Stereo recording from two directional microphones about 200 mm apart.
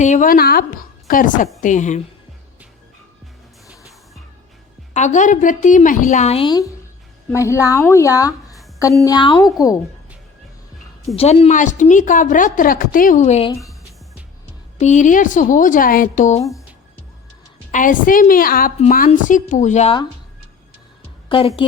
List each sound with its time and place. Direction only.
0.0 s a woman's voice: 40° left (ahead or behind)
4.9 s a woman's voice: 35° left (ahead or behind); by 9.8 s 15° left (ahead or behind)
11.2 s a woman's voice: 30° left (ahead or behind)
13.5 s speech: 15° left (ahead or behind)
14.8 s a woman's voice: 35° left (ahead or behind)
17.7 s a woman's voice: 40° left (ahead or behind)
21.2 s a woman's voice: 25° left (ahead or behind)